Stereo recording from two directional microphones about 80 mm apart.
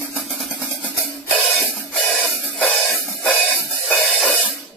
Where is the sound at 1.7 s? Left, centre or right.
Centre.